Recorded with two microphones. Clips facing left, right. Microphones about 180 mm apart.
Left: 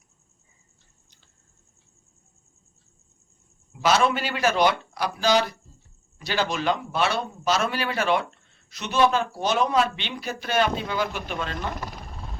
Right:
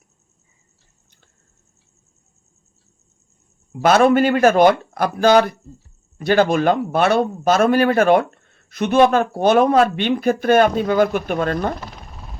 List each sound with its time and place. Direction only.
3.7 s a man's voice: 55° right (ahead or behind)